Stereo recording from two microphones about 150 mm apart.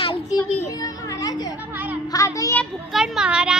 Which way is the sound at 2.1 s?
20° left (ahead or behind).